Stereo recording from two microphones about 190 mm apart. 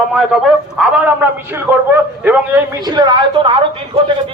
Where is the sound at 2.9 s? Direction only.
20° right (ahead or behind).